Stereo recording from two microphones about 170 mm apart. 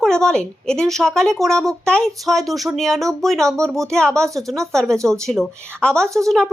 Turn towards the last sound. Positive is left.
turn(degrees=-15)  # may be behind; listen again after turning